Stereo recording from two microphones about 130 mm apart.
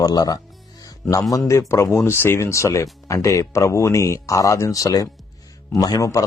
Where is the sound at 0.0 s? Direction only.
30° left (ahead or behind).